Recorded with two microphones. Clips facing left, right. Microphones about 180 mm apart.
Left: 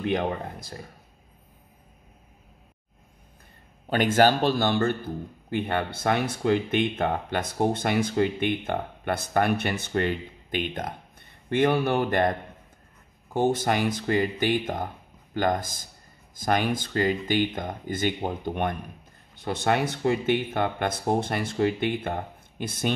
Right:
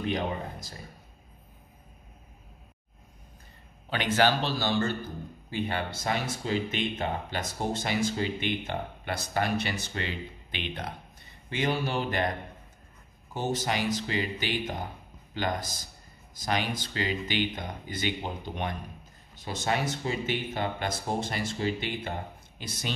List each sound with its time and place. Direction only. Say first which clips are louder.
0.0 s speech: left 4 dB; 55° left (ahead or behind)
3.9 s speech: left 5 dB; 45° left (ahead or behind)